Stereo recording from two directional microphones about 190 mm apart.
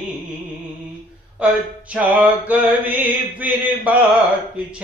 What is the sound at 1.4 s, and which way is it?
Mantra, 5° right (ahead or behind).